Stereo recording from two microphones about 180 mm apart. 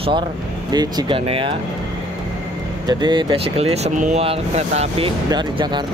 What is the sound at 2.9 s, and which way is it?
Speech, 25° right (ahead or behind).